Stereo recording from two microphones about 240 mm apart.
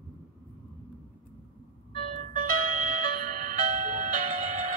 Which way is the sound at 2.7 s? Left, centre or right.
Right.